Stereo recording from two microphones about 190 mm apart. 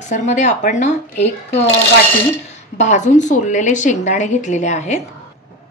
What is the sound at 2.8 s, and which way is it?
Speech, 40° left (ahead or behind).